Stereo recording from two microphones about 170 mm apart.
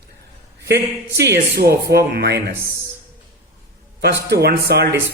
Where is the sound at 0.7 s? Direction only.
75° right (ahead or behind).